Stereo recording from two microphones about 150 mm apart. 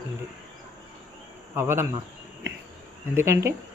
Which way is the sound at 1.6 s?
15° right (ahead or behind).